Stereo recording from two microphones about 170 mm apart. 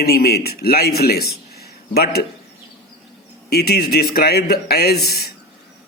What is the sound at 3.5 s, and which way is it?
Speech, 70° left (ahead or behind).